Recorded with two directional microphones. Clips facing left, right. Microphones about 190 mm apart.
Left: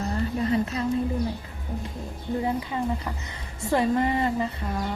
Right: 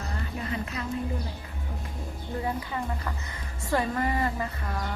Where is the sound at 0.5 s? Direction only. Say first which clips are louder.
Left 7 dB; 30° left (ahead or behind).